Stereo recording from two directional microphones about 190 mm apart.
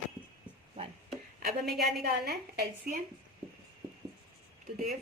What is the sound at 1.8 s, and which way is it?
A woman's voice, 55° right (ahead or behind).